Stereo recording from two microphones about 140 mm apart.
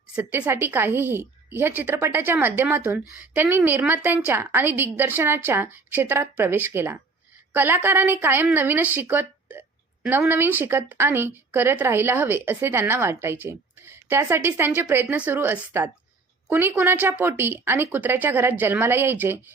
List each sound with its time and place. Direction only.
0.2 s speech: 15° right (ahead or behind)